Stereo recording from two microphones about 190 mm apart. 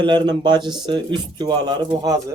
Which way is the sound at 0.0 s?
20° right (ahead or behind).